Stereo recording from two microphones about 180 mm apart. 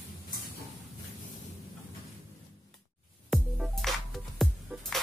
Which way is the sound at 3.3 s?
Centre (ahead or behind).